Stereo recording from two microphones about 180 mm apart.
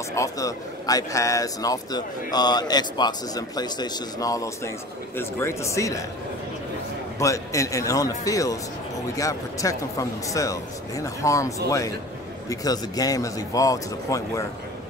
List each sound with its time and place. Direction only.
0.1 s speech: 20° left (ahead or behind)
7.2 s a man's voice: 15° left (ahead or behind)